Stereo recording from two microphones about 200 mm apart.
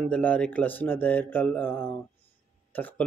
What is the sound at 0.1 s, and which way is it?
Mantra, 5° left (ahead or behind).